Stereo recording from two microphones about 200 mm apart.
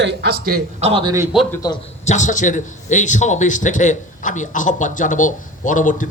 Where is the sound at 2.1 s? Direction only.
40° left (ahead or behind).